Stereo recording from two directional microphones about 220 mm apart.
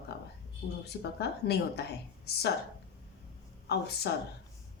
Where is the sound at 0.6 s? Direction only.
50° left (ahead or behind).